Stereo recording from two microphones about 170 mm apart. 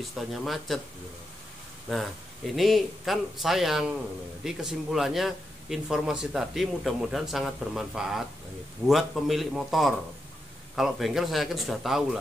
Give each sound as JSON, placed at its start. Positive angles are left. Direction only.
{"t": 0.1, "sound": "speech", "side_deg": 0}
{"t": 2.5, "sound": "speech", "side_deg": 0}